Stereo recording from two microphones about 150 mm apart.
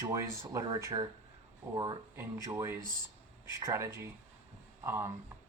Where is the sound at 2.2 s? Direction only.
20° right (ahead or behind).